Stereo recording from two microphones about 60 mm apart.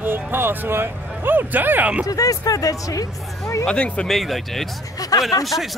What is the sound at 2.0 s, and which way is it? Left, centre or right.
Speech, left.